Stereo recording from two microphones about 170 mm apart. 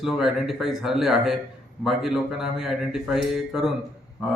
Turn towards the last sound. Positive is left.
turn(degrees=-5)  # may be behind; listen again after turning